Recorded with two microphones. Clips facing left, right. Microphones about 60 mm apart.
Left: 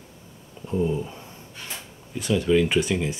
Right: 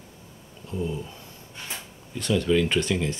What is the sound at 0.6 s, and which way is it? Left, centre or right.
Speech, left.